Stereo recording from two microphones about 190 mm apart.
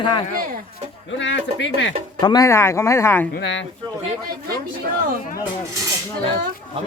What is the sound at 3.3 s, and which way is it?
Speech, 70° left (ahead or behind).